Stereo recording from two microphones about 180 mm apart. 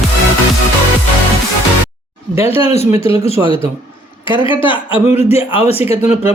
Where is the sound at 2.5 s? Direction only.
35° left (ahead or behind).